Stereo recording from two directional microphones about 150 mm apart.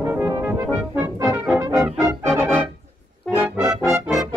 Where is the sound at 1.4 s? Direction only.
10° right (ahead or behind).